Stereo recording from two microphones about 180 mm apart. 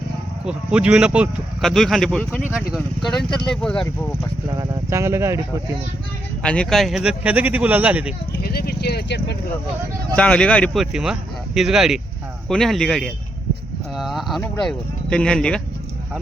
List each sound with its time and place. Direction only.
0.4 s speech: 5° right (ahead or behind)
4.6 s speech: 20° right (ahead or behind)
6.4 s speech: 5° left (ahead or behind)
8.4 s speech: 60° left (ahead or behind)
10.2 s speech: 5° left (ahead or behind)
13.9 s a sound: centre (ahead or behind)
14.6 s speech: 5° left (ahead or behind)